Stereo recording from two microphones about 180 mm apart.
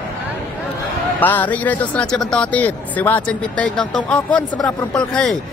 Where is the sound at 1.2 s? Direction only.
10° left (ahead or behind).